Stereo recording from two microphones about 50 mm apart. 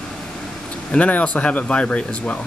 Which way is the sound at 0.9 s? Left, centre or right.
Left.